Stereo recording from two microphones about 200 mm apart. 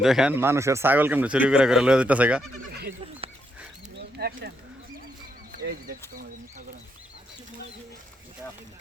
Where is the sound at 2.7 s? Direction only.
50° right (ahead or behind).